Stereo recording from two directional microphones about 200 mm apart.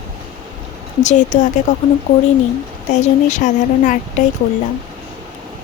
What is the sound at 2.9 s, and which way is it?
A woman's voice, 35° left (ahead or behind).